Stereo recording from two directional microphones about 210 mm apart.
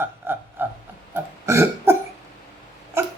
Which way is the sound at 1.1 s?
10° right (ahead or behind).